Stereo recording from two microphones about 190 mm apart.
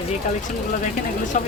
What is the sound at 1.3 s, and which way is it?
Speech, 40° left (ahead or behind).